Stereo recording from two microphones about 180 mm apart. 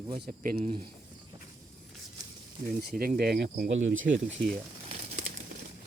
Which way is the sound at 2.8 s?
55° right (ahead or behind).